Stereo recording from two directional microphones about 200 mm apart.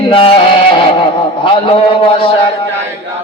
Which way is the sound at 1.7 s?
25° left (ahead or behind).